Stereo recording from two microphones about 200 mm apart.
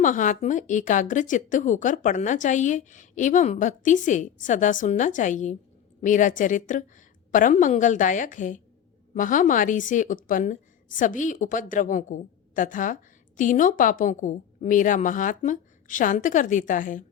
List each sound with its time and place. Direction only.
0.0 s a woman's voice: 40° left (ahead or behind)